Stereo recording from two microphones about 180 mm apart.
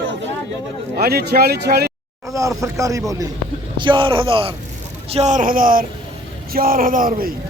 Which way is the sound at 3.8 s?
30° right (ahead or behind).